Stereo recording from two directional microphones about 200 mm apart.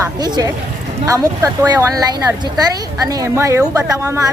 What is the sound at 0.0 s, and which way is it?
Speech, 20° right (ahead or behind).